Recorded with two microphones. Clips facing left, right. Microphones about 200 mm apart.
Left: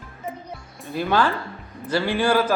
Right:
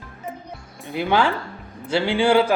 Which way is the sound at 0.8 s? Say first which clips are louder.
Right 1 dB; 15° right (ahead or behind).